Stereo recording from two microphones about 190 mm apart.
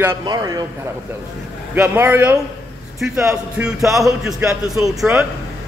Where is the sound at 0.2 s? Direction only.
20° right (ahead or behind).